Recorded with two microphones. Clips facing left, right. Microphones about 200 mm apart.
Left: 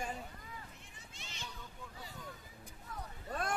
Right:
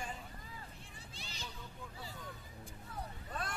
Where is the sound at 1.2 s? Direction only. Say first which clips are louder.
Even; 35° right (ahead or behind).